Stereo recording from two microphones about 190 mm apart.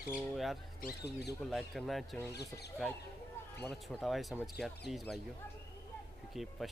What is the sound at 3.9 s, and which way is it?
Speech, centre (ahead or behind).